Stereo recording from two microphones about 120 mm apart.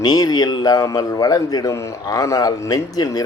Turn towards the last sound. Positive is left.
turn(degrees=30)  # may be behind; listen again after turning